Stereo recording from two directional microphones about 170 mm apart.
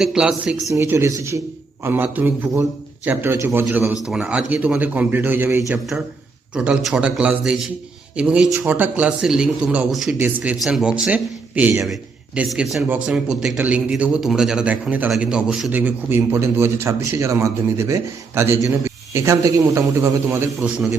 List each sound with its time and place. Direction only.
0.0 s a man's voice: 5° right (ahead or behind)
0.7 s a man's voice: 15° right (ahead or behind)